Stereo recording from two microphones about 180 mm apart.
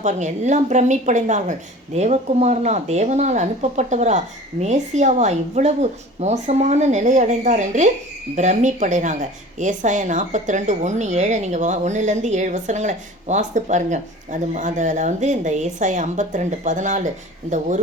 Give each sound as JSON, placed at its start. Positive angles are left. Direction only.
{"t": 0.0, "sound": "a woman's voice", "side_deg": -40}